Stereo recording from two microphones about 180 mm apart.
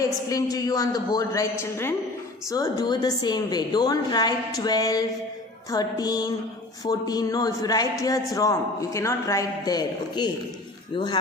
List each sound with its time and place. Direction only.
0.0 s a man's voice: 20° left (ahead or behind)